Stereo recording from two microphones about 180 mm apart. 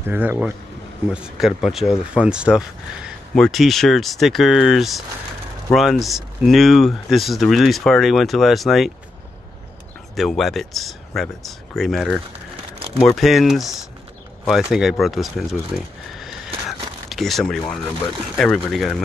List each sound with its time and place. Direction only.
0.0 s speech: 10° right (ahead or behind)
10.1 s speech: centre (ahead or behind)
12.7 s a sound: 30° right (ahead or behind)
13.0 s speech: centre (ahead or behind)
17.1 s speech: centre (ahead or behind)